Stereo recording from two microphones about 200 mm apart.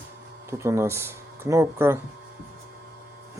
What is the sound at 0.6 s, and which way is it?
Speech, 15° right (ahead or behind).